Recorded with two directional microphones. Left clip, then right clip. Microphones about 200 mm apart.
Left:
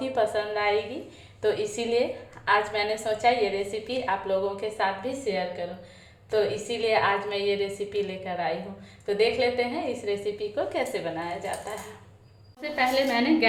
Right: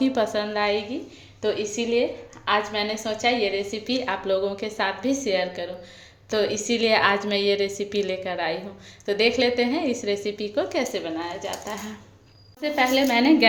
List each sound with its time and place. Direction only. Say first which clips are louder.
0.0 s a woman's voice: right 2 dB; 40° right (ahead or behind)
1.4 s a woman's voice: right 1 dB; 25° right (ahead or behind); by 13.3 s 40° right (ahead or behind)